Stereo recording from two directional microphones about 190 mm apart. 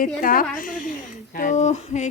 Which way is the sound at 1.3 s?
40° left (ahead or behind).